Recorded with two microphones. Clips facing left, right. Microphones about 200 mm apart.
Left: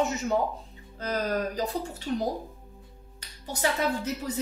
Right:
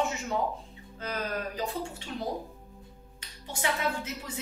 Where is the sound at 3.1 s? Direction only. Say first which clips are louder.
Left 3 dB; 40° left (ahead or behind).